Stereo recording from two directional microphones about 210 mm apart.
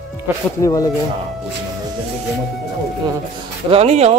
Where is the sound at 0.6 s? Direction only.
15° left (ahead or behind).